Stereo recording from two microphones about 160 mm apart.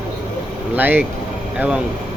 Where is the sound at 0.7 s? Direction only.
10° right (ahead or behind).